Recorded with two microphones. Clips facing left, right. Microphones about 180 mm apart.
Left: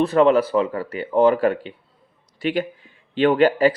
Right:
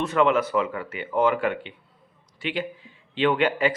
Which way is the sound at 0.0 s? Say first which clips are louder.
Left 6 dB; 35° left (ahead or behind).